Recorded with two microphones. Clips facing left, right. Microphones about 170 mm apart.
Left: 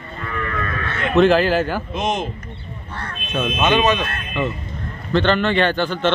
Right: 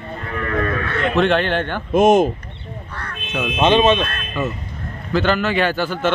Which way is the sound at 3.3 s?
5° right (ahead or behind).